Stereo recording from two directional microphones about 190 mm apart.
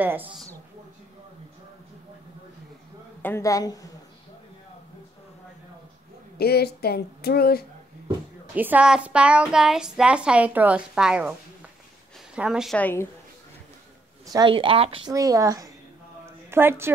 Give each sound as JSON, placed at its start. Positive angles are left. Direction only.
{"t": 0.0, "sound": "speech", "side_deg": -10}
{"t": 3.2, "sound": "a woman's voice", "side_deg": 10}
{"t": 6.3, "sound": "speech", "side_deg": 55}
{"t": 8.5, "sound": "a child's voice", "side_deg": -10}
{"t": 12.4, "sound": "a child's voice", "side_deg": -5}
{"t": 14.2, "sound": "speech", "side_deg": -20}
{"t": 15.1, "sound": "a woman's voice", "side_deg": -15}